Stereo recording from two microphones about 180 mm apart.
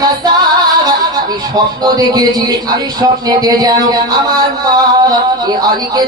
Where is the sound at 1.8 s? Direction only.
20° right (ahead or behind).